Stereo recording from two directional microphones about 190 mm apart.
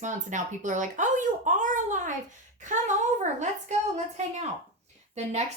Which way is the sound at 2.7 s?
40° right (ahead or behind).